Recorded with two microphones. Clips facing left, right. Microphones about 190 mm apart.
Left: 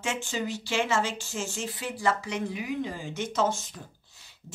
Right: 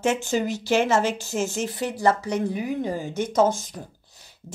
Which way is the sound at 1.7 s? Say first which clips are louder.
Right 7 dB; 70° right (ahead or behind).